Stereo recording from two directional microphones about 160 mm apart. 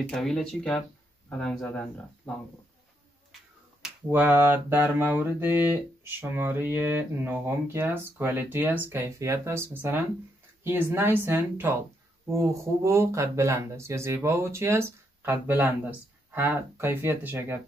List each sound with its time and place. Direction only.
0.0 s speech: 5° left (ahead or behind)
3.8 s mantra: 10° right (ahead or behind)